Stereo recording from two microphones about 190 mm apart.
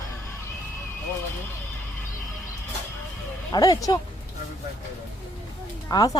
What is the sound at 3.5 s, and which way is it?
Speech, 20° left (ahead or behind).